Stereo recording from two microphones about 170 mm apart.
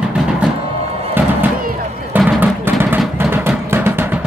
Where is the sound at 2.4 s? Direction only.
10° right (ahead or behind).